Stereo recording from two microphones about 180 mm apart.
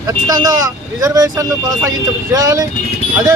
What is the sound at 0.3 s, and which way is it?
A man's voice, 20° right (ahead or behind).